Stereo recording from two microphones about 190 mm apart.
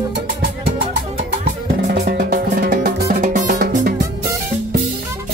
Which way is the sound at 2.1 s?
55° right (ahead or behind).